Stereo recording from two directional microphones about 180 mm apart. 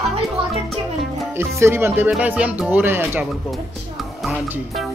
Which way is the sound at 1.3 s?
15° right (ahead or behind).